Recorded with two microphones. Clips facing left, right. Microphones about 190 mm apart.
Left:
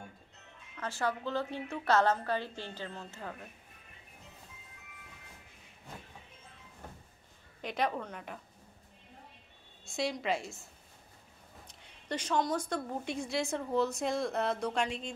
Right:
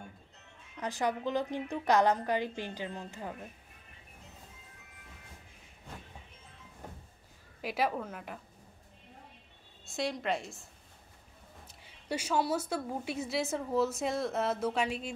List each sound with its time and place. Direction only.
0.7 s a woman's voice: 15° right (ahead or behind)
7.6 s a woman's voice: 5° right (ahead or behind)
9.8 s a woman's voice: centre (ahead or behind)